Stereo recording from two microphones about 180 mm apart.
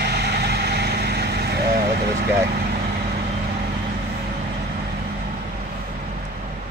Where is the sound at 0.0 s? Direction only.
65° right (ahead or behind).